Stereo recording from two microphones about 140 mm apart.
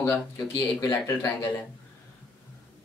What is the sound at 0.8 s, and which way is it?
Speech, 25° left (ahead or behind).